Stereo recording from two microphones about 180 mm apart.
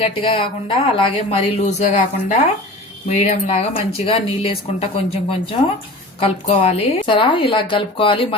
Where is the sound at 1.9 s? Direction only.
45° left (ahead or behind).